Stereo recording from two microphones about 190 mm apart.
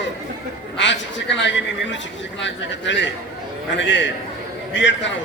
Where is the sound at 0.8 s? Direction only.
70° left (ahead or behind).